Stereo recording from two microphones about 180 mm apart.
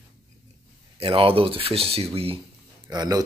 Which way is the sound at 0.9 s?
30° right (ahead or behind).